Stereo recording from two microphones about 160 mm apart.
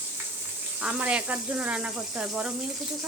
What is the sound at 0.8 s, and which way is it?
Speech, 5° right (ahead or behind).